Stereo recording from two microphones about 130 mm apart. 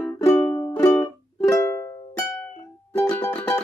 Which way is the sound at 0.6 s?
25° left (ahead or behind).